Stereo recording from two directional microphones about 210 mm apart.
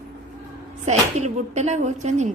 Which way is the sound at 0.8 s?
35° right (ahead or behind).